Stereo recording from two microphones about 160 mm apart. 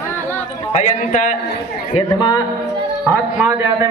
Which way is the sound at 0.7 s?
50° left (ahead or behind).